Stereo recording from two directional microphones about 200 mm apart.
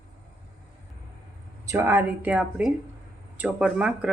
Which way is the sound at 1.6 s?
10° right (ahead or behind).